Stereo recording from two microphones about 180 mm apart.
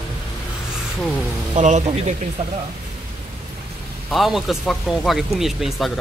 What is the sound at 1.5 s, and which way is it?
Speech, 40° right (ahead or behind).